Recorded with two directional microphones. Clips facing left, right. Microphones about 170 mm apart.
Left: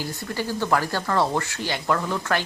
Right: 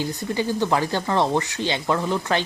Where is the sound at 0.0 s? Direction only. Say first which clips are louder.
Right 4 dB; 20° right (ahead or behind).